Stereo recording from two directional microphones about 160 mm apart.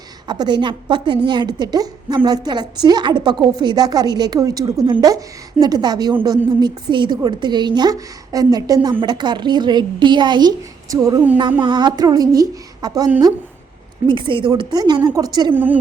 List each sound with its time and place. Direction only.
0.3 s a woman's voice: 25° right (ahead or behind)
14.1 s a woman's voice: 30° right (ahead or behind)
15.5 s a woman's voice: 10° right (ahead or behind)